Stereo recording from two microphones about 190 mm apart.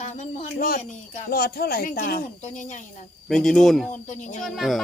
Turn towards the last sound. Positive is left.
turn(degrees=0)  # may be behind; listen again after turning